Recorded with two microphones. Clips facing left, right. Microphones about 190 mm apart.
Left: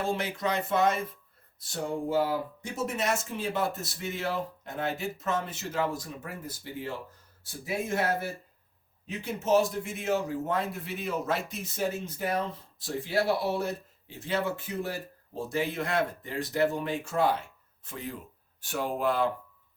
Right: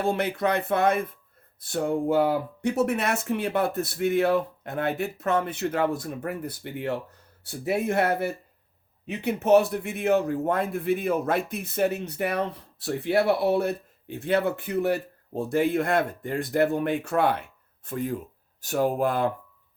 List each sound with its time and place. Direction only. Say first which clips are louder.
0.0 s a man's voice: right 5 dB; 60° right (ahead or behind)
17.8 s speech: right 9 dB; 50° right (ahead or behind)